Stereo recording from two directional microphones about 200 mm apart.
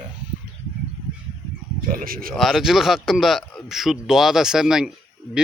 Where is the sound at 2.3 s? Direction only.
Centre (ahead or behind).